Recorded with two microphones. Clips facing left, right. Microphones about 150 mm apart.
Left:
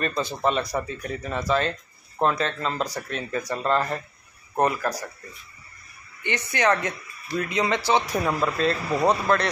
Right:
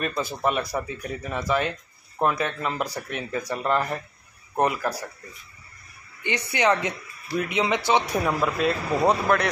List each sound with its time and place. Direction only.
0.0 s speech: 5° right (ahead or behind)
6.2 s speech: 15° right (ahead or behind)
8.3 s speech: 5° right (ahead or behind)